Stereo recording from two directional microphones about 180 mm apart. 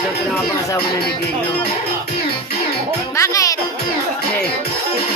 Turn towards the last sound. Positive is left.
turn(degrees=20)  # may be behind; listen again after turning